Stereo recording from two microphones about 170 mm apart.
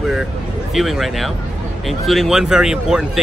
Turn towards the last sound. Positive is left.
turn(degrees=-5)  # may be behind; listen again after turning